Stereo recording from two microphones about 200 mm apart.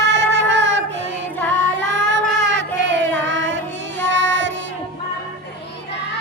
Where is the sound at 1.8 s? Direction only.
65° right (ahead or behind).